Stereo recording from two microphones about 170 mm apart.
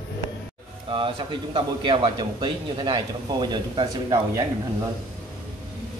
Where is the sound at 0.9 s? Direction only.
30° right (ahead or behind).